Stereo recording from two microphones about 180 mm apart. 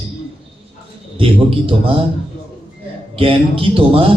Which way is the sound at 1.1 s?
30° right (ahead or behind).